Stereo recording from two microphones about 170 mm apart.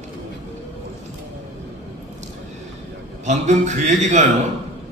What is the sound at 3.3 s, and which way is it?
Speech, 45° right (ahead or behind).